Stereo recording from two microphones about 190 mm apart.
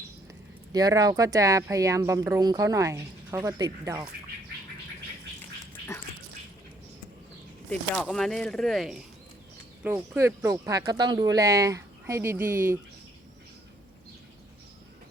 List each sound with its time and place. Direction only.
0.7 s speech: 20° right (ahead or behind)
7.7 s speech: 5° left (ahead or behind)
9.8 s speech: 15° right (ahead or behind)